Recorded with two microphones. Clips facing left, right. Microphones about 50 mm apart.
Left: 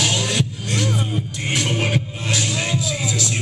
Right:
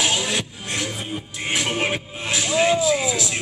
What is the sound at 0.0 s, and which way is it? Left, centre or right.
Music, centre.